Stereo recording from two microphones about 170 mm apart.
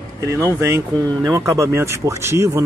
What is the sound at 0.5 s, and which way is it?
Speech, 15° right (ahead or behind).